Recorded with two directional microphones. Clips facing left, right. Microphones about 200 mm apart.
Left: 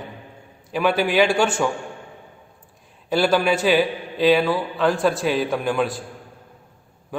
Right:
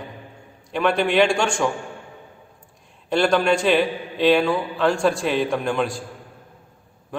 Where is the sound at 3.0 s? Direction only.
5° left (ahead or behind).